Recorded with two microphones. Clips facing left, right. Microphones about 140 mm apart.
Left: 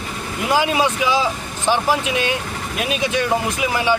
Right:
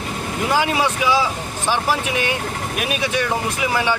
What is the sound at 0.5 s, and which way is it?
Speech, 20° left (ahead or behind).